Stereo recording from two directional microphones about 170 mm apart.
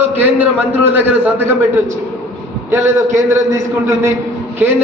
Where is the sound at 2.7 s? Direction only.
20° right (ahead or behind).